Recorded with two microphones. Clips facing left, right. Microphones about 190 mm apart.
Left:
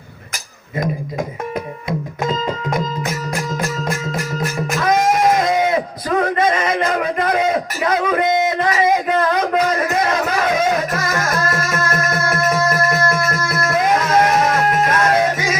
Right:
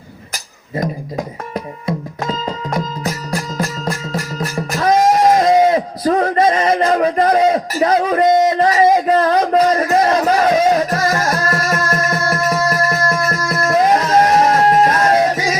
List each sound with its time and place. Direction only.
2.6 s music: 35° right (ahead or behind)
4.7 s a sound: 35° right (ahead or behind)
13.0 s music: 35° right (ahead or behind)